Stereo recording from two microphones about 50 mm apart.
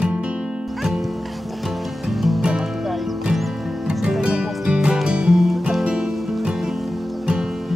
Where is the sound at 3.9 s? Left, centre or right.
Centre.